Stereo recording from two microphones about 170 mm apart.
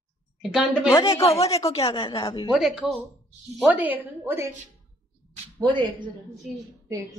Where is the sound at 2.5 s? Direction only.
5° right (ahead or behind).